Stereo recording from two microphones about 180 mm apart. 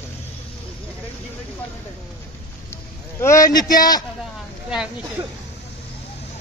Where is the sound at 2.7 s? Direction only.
15° left (ahead or behind).